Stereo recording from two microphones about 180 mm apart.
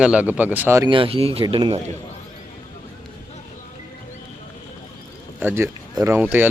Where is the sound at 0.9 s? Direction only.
30° right (ahead or behind).